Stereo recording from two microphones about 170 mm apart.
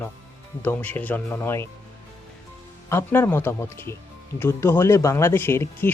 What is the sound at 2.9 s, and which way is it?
Speech, 15° left (ahead or behind).